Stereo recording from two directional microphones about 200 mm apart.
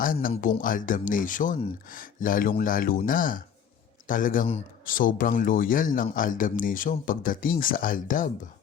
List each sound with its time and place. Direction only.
0.0 s speech: 45° left (ahead or behind)